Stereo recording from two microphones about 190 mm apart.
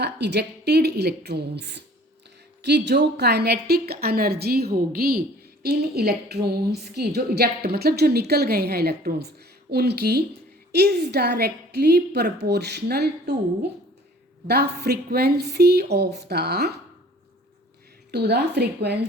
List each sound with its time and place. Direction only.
0.0 s a woman's voice: 65° right (ahead or behind)
18.1 s a woman's voice: 60° right (ahead or behind)